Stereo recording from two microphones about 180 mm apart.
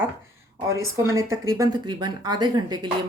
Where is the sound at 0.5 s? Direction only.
15° right (ahead or behind).